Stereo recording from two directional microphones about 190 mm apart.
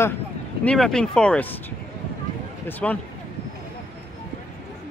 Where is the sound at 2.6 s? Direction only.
10° left (ahead or behind).